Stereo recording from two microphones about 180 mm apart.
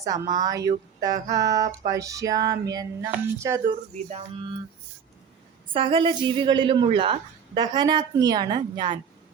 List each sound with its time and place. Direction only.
0.0 s speech: 20° right (ahead or behind)
5.7 s speech: 30° right (ahead or behind)